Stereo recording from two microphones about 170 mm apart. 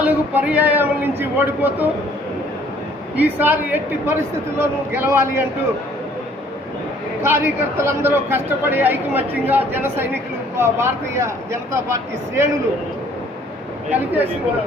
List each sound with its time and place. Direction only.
0.0 s a man's voice: 10° right (ahead or behind)
3.2 s a man's voice: 10° right (ahead or behind)
7.2 s a man's voice: 15° right (ahead or behind)
13.9 s a man's voice: 10° right (ahead or behind)